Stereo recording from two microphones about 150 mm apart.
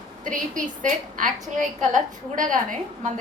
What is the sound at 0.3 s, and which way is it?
A woman's voice, 60° right (ahead or behind).